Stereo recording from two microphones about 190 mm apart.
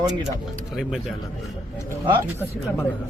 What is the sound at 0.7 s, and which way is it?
Speech, 5° right (ahead or behind).